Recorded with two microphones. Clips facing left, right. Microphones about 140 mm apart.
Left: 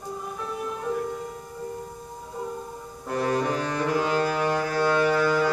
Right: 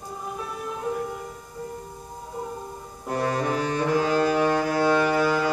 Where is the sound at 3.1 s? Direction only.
35° right (ahead or behind).